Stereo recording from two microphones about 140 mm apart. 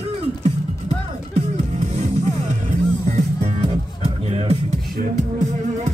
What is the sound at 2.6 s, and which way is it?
Music, 55° right (ahead or behind).